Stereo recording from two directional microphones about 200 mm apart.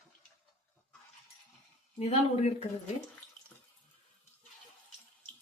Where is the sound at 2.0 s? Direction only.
30° left (ahead or behind).